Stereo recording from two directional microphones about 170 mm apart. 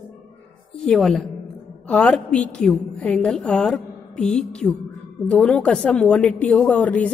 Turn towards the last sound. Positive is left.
turn(degrees=10)  # may be behind; listen again after turning